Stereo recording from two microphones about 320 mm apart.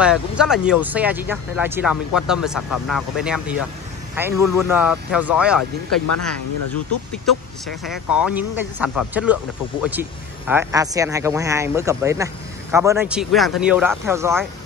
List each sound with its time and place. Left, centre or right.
0.0 s speech: centre
5.6 s speech: left
7.2 s speech: centre